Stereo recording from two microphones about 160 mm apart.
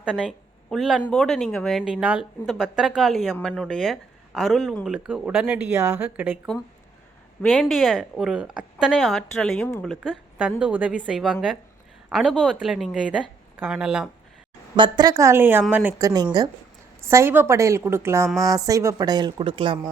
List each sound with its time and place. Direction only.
0.0 s speech: 5° right (ahead or behind)
7.4 s a woman's voice: centre (ahead or behind)
14.8 s a woman's voice: 25° right (ahead or behind)